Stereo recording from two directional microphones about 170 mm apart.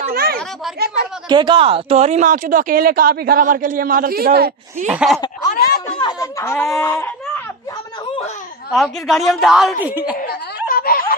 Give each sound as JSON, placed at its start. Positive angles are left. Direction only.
{"t": 0.1, "sound": "a sound", "side_deg": -65}
{"t": 1.3, "sound": "speech", "side_deg": -25}
{"t": 4.8, "sound": "a woman's voice", "side_deg": -5}
{"t": 5.9, "sound": "speech", "side_deg": 25}
{"t": 6.4, "sound": "speech", "side_deg": 15}
{"t": 8.7, "sound": "a woman's voice", "side_deg": 0}
{"t": 10.7, "sound": "snicker", "side_deg": 60}